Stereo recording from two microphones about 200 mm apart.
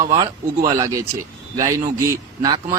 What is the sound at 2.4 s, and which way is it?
Speech, 20° right (ahead or behind).